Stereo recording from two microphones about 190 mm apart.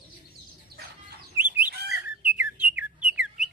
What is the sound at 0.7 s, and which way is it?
Chicken, 55° right (ahead or behind).